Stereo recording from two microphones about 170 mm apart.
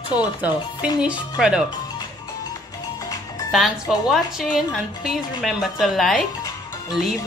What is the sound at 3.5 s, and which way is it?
A woman's voice, centre (ahead or behind).